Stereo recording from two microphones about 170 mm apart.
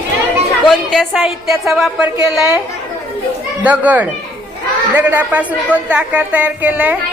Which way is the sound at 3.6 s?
10° right (ahead or behind).